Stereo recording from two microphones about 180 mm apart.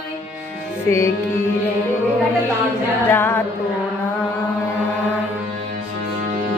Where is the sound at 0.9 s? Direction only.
15° left (ahead or behind).